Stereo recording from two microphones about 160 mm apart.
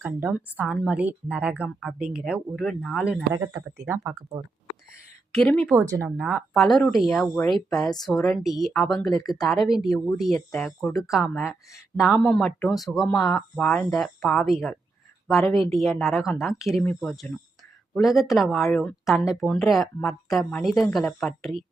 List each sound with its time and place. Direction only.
0.0 s a woman's voice: 10° right (ahead or behind)
3.8 s a woman's voice: 15° right (ahead or behind)
5.4 s speech: 5° left (ahead or behind)
5.7 s speech: 20° right (ahead or behind); by 21.6 s centre (ahead or behind)